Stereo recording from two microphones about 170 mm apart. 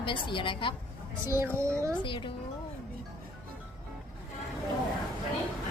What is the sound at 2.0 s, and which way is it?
Speech, 30° left (ahead or behind).